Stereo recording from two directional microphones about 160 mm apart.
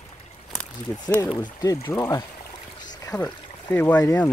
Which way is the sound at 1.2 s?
25° left (ahead or behind).